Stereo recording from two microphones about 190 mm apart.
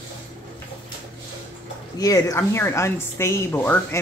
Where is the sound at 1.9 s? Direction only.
20° left (ahead or behind).